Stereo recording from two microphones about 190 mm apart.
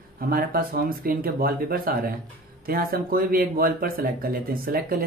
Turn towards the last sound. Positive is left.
turn(degrees=-50)  # may be behind; listen again after turning